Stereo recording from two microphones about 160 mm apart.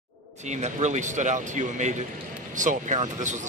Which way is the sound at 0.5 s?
45° right (ahead or behind).